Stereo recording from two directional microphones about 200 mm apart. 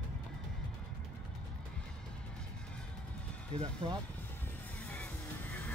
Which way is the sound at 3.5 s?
30° right (ahead or behind).